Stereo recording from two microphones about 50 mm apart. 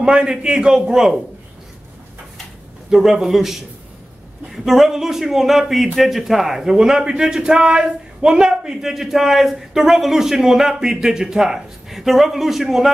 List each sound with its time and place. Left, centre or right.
0.0 s a man's voice: centre
2.9 s a man's voice: centre